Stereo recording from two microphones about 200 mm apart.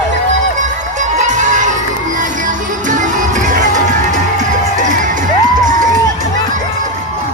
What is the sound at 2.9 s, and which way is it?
Music, 40° right (ahead or behind).